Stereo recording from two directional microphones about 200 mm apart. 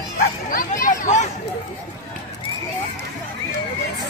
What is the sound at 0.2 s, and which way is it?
Speech, 45° left (ahead or behind).